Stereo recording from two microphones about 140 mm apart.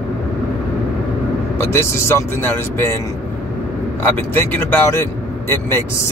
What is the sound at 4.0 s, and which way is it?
Speech, 15° left (ahead or behind).